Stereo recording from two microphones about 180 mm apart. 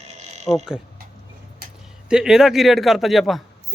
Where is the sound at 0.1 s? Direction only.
40° right (ahead or behind).